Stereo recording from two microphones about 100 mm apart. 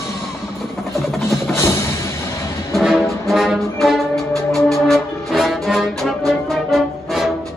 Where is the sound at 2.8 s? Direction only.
5° right (ahead or behind).